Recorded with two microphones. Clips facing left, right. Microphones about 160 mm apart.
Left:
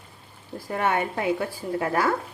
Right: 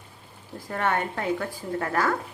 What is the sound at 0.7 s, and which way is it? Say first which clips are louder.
Speech: left 2 dB; 10° left (ahead or behind).